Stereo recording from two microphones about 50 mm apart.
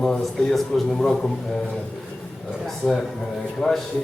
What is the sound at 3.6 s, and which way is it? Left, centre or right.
Speech, centre.